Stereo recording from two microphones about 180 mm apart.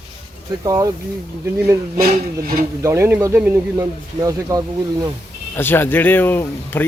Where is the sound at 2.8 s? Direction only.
15° right (ahead or behind).